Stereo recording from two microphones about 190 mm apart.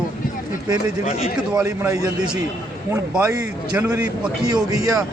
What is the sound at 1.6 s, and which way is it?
Speech, 20° right (ahead or behind).